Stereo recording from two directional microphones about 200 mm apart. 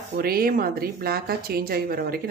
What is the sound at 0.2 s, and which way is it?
A woman's voice, 50° right (ahead or behind).